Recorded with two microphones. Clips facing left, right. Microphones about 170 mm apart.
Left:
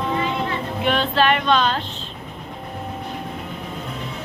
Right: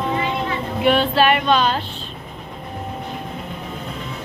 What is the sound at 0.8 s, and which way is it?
Female singing, 10° right (ahead or behind).